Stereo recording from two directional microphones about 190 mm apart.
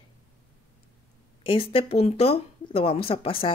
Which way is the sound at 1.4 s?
30° left (ahead or behind).